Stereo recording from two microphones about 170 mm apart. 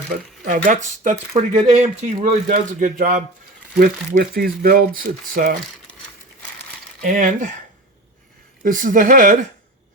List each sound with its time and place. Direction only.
0.1 s speech: 50° right (ahead or behind)
7.0 s speech: 50° right (ahead or behind)
8.6 s speech: 50° right (ahead or behind)